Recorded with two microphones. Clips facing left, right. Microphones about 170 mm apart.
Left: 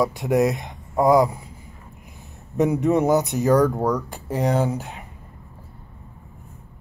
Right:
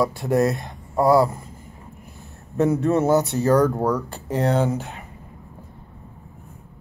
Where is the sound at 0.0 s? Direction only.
15° left (ahead or behind).